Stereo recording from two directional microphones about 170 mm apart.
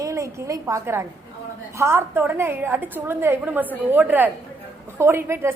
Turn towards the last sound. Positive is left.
turn(degrees=-15)  # may be behind; listen again after turning